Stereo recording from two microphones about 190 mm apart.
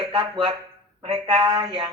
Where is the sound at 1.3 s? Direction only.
20° right (ahead or behind).